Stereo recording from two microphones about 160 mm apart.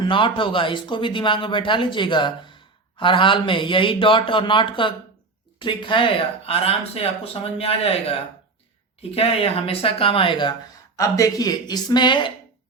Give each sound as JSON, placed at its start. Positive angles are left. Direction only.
{"t": 0.0, "sound": "speech", "side_deg": 30}
{"t": 10.9, "sound": "speech", "side_deg": 20}